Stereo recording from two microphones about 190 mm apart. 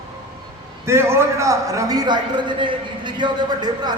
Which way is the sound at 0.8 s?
15° right (ahead or behind).